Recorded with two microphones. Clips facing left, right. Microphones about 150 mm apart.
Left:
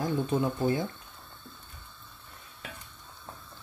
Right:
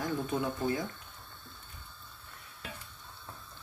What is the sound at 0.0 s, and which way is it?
Speech, 30° left (ahead or behind).